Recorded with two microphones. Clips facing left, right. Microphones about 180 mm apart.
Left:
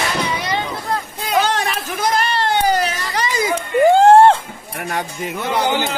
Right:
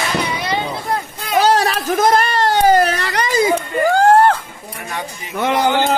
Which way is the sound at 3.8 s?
25° left (ahead or behind).